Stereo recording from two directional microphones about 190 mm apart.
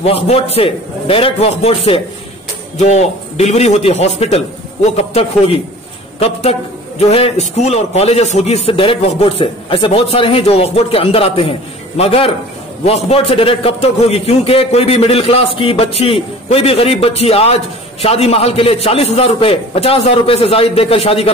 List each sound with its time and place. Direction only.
0.0 s a man's voice: 35° left (ahead or behind)